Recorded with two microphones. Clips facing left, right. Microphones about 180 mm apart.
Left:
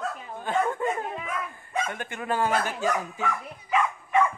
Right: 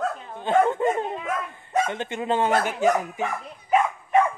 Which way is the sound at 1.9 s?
20° right (ahead or behind).